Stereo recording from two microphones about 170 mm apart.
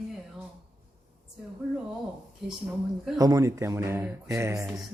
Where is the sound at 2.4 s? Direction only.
Centre (ahead or behind).